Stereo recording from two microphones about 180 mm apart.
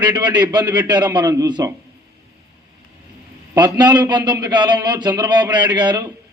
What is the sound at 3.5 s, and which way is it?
A man's voice, 20° right (ahead or behind).